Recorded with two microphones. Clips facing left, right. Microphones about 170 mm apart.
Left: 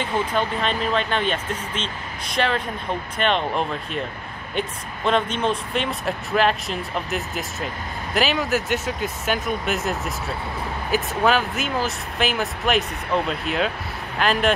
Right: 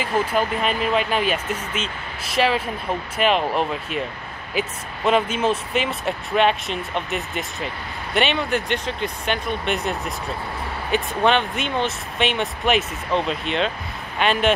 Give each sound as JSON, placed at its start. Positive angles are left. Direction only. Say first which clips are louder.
{"t": 0.0, "sound": "speech", "louder": "right 2 dB", "side_deg": -10}